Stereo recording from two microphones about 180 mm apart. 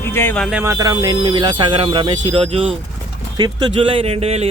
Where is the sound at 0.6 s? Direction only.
20° right (ahead or behind).